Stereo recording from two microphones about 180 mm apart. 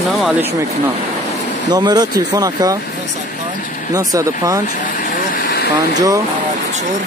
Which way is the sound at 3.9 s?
20° right (ahead or behind).